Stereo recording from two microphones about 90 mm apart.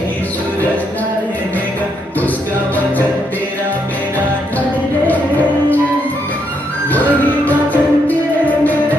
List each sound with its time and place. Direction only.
7.4 s music: 20° left (ahead or behind)